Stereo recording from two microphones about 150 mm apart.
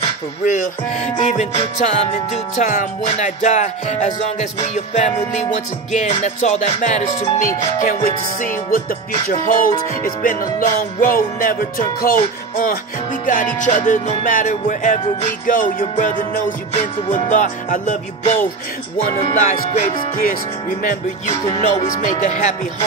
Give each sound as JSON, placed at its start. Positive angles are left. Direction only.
{"t": 0.5, "sound": "music", "side_deg": 55}
{"t": 19.3, "sound": "music", "side_deg": 60}
{"t": 21.5, "sound": "music", "side_deg": 50}